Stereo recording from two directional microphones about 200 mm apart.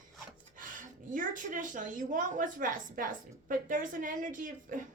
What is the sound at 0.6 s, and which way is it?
A woman's voice, 40° right (ahead or behind).